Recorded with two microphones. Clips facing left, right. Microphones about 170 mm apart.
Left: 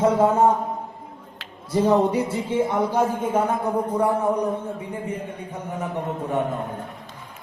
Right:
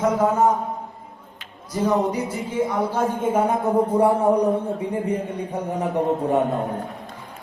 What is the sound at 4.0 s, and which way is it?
Mantra, 35° right (ahead or behind).